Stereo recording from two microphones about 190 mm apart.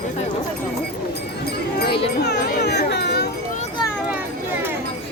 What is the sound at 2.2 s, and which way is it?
Speech, 60° left (ahead or behind).